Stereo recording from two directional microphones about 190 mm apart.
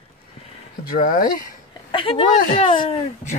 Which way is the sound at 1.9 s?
30° left (ahead or behind).